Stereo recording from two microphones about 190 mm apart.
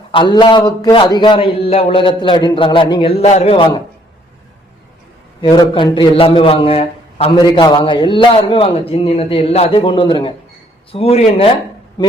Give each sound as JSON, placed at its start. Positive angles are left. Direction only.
{"t": 0.1, "sound": "a man's voice", "side_deg": 25}
{"t": 5.4, "sound": "a man's voice", "side_deg": 25}